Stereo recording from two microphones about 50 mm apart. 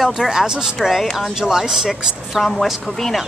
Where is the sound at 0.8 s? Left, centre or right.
Centre.